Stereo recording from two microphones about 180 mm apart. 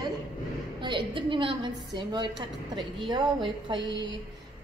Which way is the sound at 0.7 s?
25° right (ahead or behind).